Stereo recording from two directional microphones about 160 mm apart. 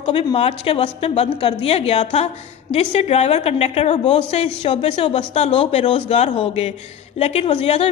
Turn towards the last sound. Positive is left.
turn(degrees=40)  # may be behind; listen again after turning